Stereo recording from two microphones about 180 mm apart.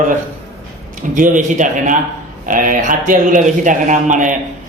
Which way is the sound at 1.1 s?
45° right (ahead or behind).